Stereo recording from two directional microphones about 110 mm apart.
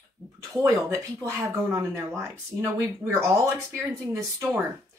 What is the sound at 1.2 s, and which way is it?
Speech, 25° right (ahead or behind).